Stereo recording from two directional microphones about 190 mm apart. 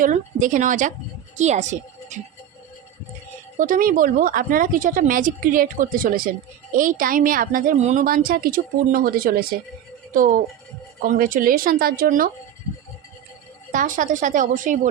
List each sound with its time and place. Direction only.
0.0 s a woman's voice: 45° right (ahead or behind)
3.6 s a woman's voice: 45° right (ahead or behind)
13.7 s a woman's voice: 45° right (ahead or behind)